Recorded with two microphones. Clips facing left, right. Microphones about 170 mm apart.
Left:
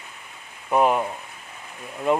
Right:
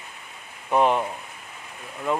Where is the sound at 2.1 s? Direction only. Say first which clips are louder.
Left 4 dB; 20° left (ahead or behind).